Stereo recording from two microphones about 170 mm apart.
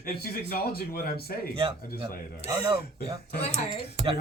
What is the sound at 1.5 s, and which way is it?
Speech, 30° right (ahead or behind).